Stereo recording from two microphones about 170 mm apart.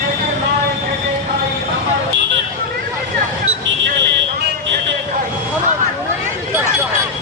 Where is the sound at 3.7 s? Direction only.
90° right.